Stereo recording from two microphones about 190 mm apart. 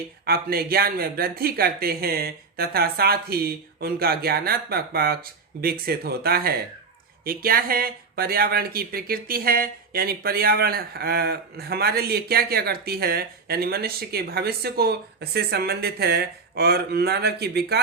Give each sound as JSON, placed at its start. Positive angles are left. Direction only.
{"t": 0.3, "sound": "speech", "side_deg": -55}